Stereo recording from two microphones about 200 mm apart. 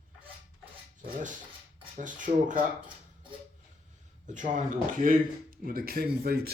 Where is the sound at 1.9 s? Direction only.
40° right (ahead or behind).